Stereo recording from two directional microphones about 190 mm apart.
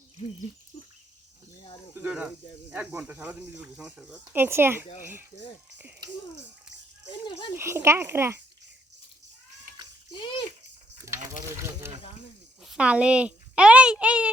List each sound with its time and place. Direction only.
0.2 s a sound: 35° left (ahead or behind)
2.0 s speech: 5° right (ahead or behind)
7.5 s speech: 15° right (ahead or behind)
10.1 s a child's voice: 30° left (ahead or behind)
11.1 s a sound: 15° right (ahead or behind)
11.5 s speech: 15° right (ahead or behind)